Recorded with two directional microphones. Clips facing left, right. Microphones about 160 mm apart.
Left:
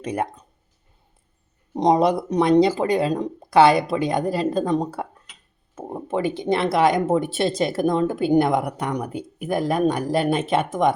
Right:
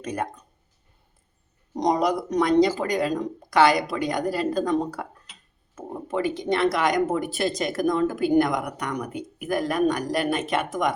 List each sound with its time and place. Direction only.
0.0 s speech: 25° left (ahead or behind)
1.7 s speech: 25° left (ahead or behind)